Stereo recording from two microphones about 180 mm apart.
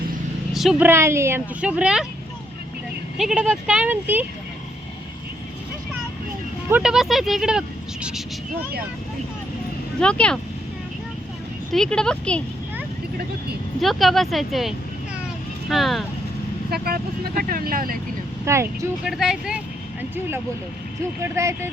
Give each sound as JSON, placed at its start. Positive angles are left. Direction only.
{"t": 0.5, "sound": "speech", "side_deg": 0}
{"t": 3.2, "sound": "speech", "side_deg": -5}
{"t": 6.7, "sound": "speech", "side_deg": -5}
{"t": 10.0, "sound": "speech", "side_deg": 5}
{"t": 11.7, "sound": "speech", "side_deg": 5}
{"t": 13.8, "sound": "speech", "side_deg": 0}
{"t": 15.7, "sound": "speech", "side_deg": 0}
{"t": 16.6, "sound": "speech", "side_deg": -55}
{"t": 18.4, "sound": "speech", "side_deg": -15}
{"t": 19.0, "sound": "speech", "side_deg": 0}